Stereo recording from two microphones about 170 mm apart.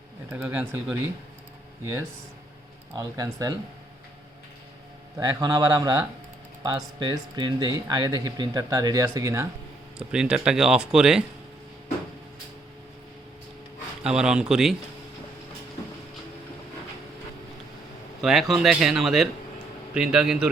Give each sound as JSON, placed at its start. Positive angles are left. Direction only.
{"t": 0.3, "sound": "speech", "side_deg": -10}
{"t": 2.9, "sound": "speech", "side_deg": -20}
{"t": 5.1, "sound": "speech", "side_deg": -20}
{"t": 10.0, "sound": "speech", "side_deg": -5}
{"t": 14.0, "sound": "speech", "side_deg": -5}
{"t": 18.2, "sound": "speech", "side_deg": 0}